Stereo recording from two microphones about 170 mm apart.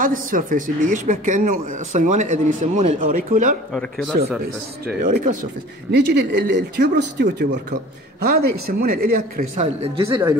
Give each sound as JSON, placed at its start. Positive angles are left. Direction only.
{"t": 0.0, "sound": "a man's voice", "side_deg": -55}
{"t": 4.8, "sound": "speech", "side_deg": -65}
{"t": 5.9, "sound": "speech", "side_deg": -80}
{"t": 8.3, "sound": "speech", "side_deg": -60}
{"t": 9.6, "sound": "speech", "side_deg": -35}
{"t": 10.0, "sound": "speech", "side_deg": -15}